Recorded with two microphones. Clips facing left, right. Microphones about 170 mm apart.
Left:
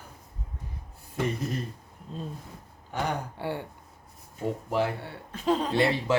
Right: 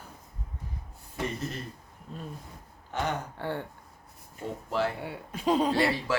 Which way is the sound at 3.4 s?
15° left (ahead or behind).